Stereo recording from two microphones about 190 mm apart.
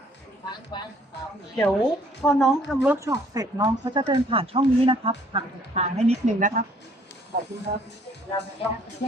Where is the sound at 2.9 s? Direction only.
15° right (ahead or behind); by 6.6 s 45° right (ahead or behind).